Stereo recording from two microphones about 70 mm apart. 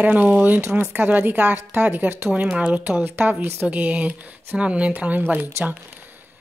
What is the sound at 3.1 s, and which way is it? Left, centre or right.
Speech, right.